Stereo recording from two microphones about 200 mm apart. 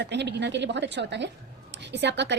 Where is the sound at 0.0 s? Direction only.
60° right (ahead or behind).